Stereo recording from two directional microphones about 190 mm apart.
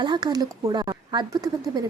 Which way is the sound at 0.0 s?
20° right (ahead or behind).